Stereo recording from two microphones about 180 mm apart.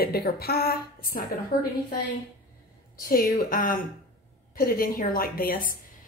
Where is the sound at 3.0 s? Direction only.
50° left (ahead or behind).